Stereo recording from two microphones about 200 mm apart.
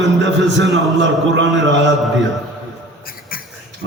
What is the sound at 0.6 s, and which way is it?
A man's voice, 65° right (ahead or behind).